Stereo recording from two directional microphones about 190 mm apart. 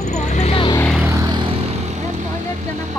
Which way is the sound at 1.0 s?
15° right (ahead or behind).